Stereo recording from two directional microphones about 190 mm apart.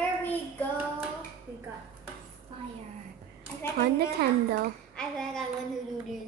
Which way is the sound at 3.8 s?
55° right (ahead or behind).